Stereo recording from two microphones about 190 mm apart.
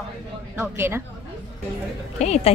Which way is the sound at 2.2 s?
35° left (ahead or behind).